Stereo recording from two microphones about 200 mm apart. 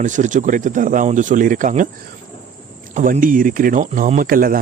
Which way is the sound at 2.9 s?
40° right (ahead or behind).